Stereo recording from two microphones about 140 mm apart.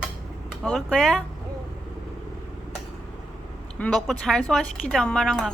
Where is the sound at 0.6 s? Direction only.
5° left (ahead or behind).